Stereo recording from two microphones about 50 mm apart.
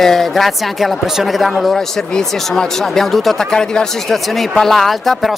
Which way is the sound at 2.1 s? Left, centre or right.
Centre.